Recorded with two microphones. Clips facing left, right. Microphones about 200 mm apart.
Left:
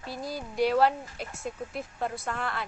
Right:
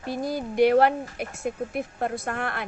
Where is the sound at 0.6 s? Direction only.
60° right (ahead or behind).